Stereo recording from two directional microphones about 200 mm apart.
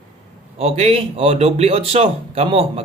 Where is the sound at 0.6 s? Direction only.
30° right (ahead or behind).